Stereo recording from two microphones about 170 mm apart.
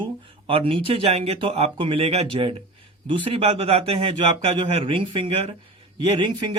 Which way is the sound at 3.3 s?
35° right (ahead or behind).